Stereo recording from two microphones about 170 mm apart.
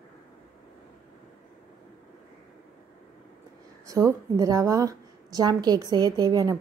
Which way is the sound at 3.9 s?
20° right (ahead or behind).